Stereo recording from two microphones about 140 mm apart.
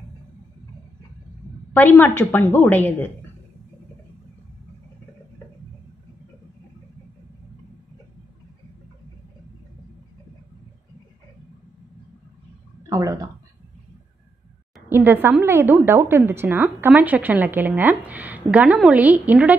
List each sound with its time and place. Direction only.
1.7 s a woman's voice: 15° left (ahead or behind)
12.9 s a sound: 25° right (ahead or behind)
14.9 s a woman's voice: 15° right (ahead or behind)